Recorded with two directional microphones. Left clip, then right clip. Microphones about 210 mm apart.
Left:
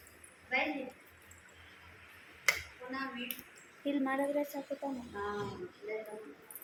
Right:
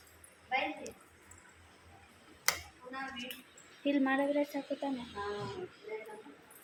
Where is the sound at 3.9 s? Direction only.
25° right (ahead or behind).